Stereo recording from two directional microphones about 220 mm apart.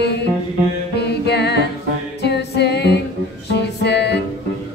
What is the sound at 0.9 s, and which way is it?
Music, 50° left (ahead or behind).